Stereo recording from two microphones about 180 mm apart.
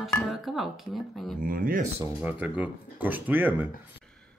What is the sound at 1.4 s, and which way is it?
Speech, 50° right (ahead or behind).